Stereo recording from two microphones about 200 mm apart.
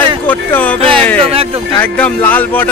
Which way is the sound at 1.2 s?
30° right (ahead or behind).